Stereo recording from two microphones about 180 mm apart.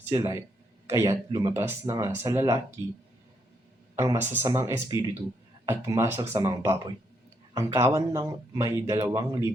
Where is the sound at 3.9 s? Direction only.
15° right (ahead or behind).